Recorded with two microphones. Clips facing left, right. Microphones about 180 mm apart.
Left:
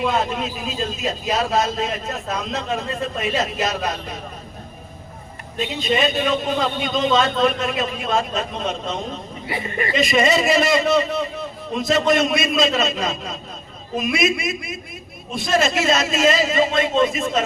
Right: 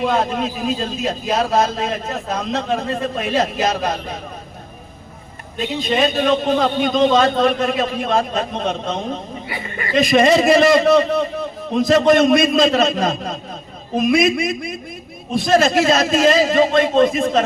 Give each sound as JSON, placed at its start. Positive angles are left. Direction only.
{"t": 0.0, "sound": "a man's voice", "side_deg": -50}
{"t": 5.9, "sound": "a man's voice", "side_deg": -50}